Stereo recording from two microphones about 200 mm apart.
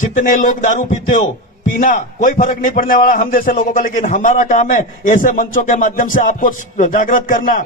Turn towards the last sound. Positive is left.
turn(degrees=45)  # may be behind; listen again after turning